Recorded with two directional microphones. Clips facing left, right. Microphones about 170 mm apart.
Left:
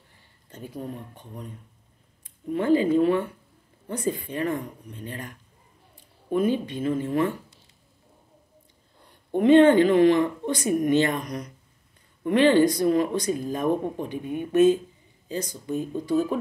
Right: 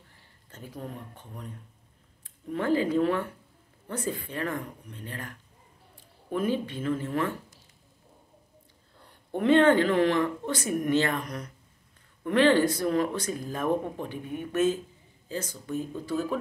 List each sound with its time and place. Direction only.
0.5 s speech: 15° left (ahead or behind)
9.3 s speech: 15° left (ahead or behind)